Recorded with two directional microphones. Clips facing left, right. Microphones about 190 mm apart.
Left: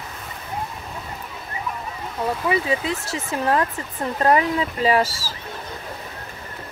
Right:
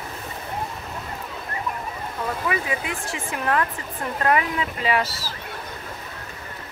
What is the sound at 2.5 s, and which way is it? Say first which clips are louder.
Speech: left 5 dB; 35° left (ahead or behind).